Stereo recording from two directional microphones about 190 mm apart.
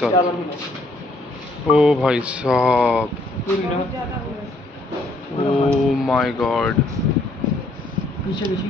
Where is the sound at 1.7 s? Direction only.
5° right (ahead or behind).